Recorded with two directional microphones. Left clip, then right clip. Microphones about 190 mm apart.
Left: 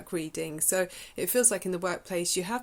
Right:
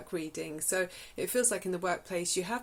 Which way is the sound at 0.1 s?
45° left (ahead or behind).